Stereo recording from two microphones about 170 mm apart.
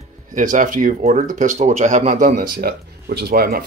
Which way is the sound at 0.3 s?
50° right (ahead or behind).